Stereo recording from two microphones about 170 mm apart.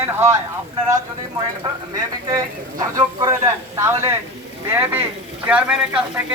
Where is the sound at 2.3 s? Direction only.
20° right (ahead or behind).